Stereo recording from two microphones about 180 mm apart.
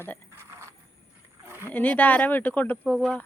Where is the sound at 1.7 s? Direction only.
10° left (ahead or behind).